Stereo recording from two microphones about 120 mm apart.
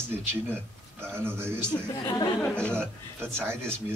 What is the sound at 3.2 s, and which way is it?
Speech, 20° right (ahead or behind).